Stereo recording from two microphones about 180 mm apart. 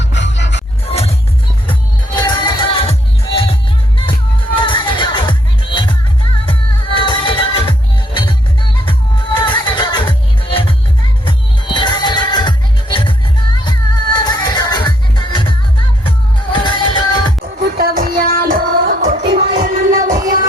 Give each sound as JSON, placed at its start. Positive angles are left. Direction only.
{"t": 0.0, "sound": "music", "side_deg": 80}
{"t": 0.9, "sound": "music", "side_deg": 35}
{"t": 2.1, "sound": "music", "side_deg": 25}
{"t": 4.5, "sound": "music", "side_deg": 25}
{"t": 9.7, "sound": "music", "side_deg": 25}
{"t": 16.0, "sound": "music", "side_deg": 25}
{"t": 17.4, "sound": "music", "side_deg": -55}
{"t": 19.2, "sound": "music", "side_deg": -25}
{"t": 19.6, "sound": "music", "side_deg": -50}